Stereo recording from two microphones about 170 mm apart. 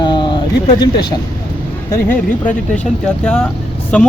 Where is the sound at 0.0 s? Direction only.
25° left (ahead or behind).